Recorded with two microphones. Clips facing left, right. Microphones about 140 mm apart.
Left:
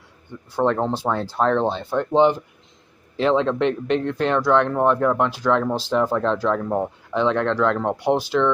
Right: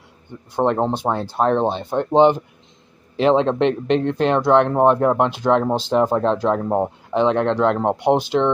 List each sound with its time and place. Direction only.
0.6 s speech: 20° right (ahead or behind)